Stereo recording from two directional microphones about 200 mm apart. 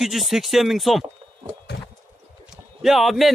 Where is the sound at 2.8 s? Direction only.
Centre (ahead or behind).